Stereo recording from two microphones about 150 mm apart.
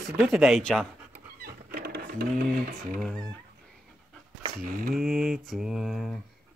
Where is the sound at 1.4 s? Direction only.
90° right.